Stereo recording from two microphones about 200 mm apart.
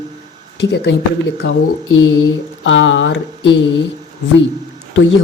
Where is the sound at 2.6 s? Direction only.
70° left (ahead or behind).